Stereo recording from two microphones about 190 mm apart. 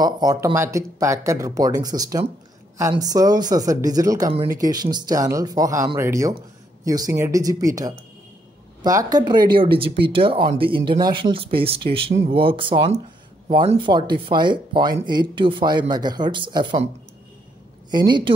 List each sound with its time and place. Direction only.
0.0 s speech: 20° right (ahead or behind)
17.9 s speech: 25° right (ahead or behind)